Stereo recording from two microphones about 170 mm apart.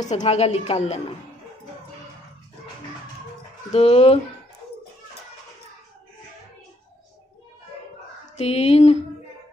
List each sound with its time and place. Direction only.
0.2 s a woman's voice: 35° left (ahead or behind)
3.7 s a woman's voice: 35° left (ahead or behind)
8.4 s a woman's voice: 35° left (ahead or behind)